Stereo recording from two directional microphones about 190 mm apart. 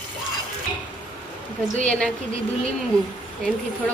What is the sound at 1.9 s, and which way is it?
Speech, 5° left (ahead or behind).